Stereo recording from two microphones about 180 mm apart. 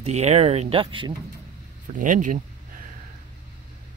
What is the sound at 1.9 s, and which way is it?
Speech, 45° right (ahead or behind).